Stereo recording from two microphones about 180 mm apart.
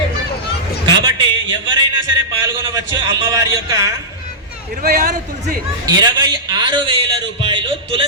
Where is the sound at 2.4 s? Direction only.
15° right (ahead or behind).